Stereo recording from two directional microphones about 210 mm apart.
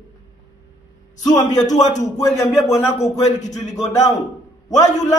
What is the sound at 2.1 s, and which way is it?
Speech, 15° left (ahead or behind).